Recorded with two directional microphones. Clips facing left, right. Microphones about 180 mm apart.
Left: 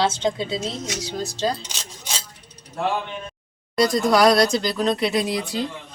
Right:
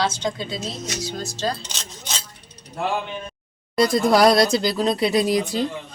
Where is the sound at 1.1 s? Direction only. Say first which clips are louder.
Left 4 dB; 20° left (ahead or behind).